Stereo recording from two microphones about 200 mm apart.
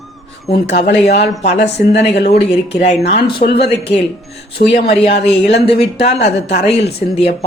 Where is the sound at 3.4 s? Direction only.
55° left (ahead or behind).